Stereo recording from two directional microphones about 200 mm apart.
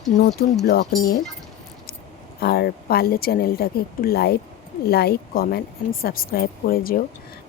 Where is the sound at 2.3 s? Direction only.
50° left (ahead or behind).